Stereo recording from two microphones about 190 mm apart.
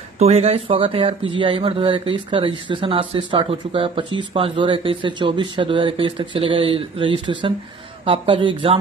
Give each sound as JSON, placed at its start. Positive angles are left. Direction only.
{"t": 0.2, "sound": "speech", "side_deg": -35}